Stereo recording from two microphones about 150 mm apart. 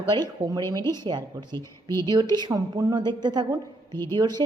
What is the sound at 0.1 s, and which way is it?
Speech, 25° right (ahead or behind).